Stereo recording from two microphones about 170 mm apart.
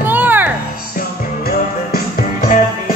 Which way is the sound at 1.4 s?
60° left (ahead or behind).